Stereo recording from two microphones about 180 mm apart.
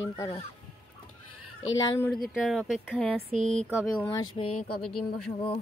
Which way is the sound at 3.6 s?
5° right (ahead or behind).